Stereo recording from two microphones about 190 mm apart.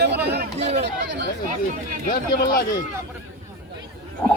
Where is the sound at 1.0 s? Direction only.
65° right (ahead or behind).